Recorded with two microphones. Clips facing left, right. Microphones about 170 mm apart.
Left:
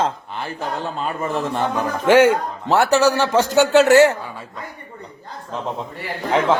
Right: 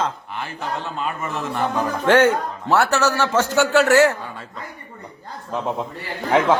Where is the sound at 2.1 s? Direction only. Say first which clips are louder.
Left 3 dB; 10° left (ahead or behind).